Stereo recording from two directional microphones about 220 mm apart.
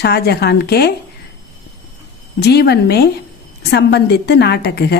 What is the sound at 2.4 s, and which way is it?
A woman's voice, 45° left (ahead or behind).